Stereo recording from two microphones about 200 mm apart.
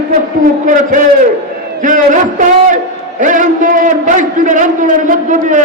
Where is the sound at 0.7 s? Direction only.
40° right (ahead or behind).